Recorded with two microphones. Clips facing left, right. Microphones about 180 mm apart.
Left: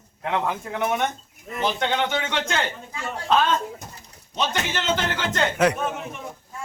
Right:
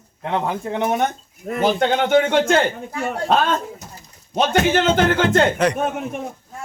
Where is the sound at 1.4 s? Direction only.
50° right (ahead or behind).